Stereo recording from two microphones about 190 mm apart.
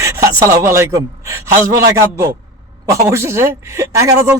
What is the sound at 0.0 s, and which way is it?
A man's voice, 15° right (ahead or behind).